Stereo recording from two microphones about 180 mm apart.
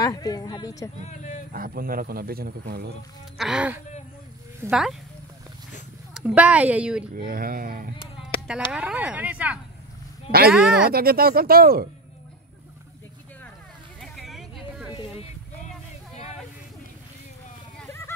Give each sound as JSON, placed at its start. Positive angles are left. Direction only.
{"t": 0.0, "sound": "speech", "side_deg": 20}
{"t": 1.0, "sound": "speech", "side_deg": 40}
{"t": 1.5, "sound": "speech", "side_deg": -55}
{"t": 3.3, "sound": "speech", "side_deg": -5}
{"t": 6.1, "sound": "a woman's voice", "side_deg": -5}
{"t": 7.2, "sound": "speech", "side_deg": -55}
{"t": 8.2, "sound": "a sound", "side_deg": -5}
{"t": 8.7, "sound": "a woman's voice", "side_deg": -5}
{"t": 10.9, "sound": "speech", "side_deg": -55}
{"t": 14.0, "sound": "vehicle", "side_deg": 0}